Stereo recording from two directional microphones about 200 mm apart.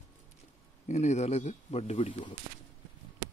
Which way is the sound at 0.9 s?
35° left (ahead or behind).